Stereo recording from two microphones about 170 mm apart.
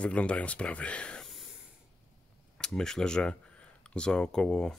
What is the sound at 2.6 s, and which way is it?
Speech, 5° left (ahead or behind).